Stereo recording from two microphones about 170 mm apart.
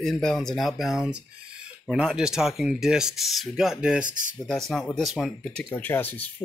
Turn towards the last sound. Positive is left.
turn(degrees=10)  # may be behind; listen again after turning